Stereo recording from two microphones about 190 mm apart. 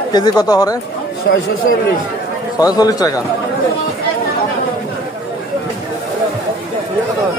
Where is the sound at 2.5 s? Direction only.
20° left (ahead or behind).